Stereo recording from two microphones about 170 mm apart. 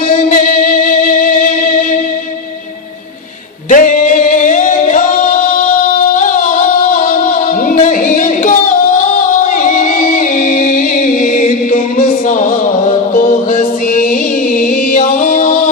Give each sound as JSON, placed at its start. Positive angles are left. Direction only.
{"t": 0.1, "sound": "music", "side_deg": 50}
{"t": 3.7, "sound": "singing", "side_deg": 50}
{"t": 6.9, "sound": "music", "side_deg": 50}